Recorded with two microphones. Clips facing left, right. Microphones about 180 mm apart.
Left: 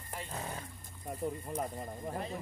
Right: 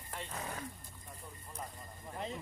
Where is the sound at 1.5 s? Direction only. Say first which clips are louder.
Left 6 dB; 65° left (ahead or behind).